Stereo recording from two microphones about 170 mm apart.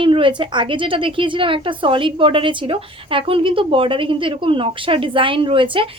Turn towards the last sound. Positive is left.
turn(degrees=-30)  # may be behind; listen again after turning